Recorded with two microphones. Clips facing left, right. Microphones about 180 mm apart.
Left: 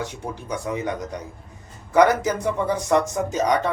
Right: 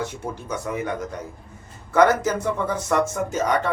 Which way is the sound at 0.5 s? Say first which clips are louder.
Left 1 dB; 20° left (ahead or behind).